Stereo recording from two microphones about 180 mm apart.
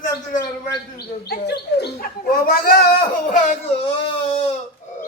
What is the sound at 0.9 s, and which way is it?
Speech, 65° left (ahead or behind).